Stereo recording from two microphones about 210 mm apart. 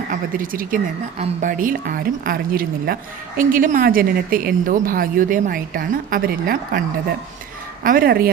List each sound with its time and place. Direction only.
0.1 s a woman's voice: 40° right (ahead or behind)
7.9 s speech: 45° right (ahead or behind)